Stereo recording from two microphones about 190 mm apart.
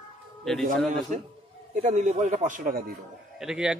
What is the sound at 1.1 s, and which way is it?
Speech, 40° right (ahead or behind).